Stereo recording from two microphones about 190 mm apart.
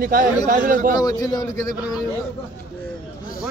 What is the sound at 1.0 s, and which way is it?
Speech, 20° left (ahead or behind).